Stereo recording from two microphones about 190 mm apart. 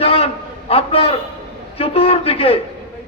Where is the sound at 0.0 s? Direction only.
30° left (ahead or behind).